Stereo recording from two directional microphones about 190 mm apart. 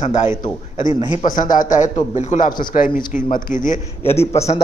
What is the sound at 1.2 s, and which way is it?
A man's voice, 45° left (ahead or behind).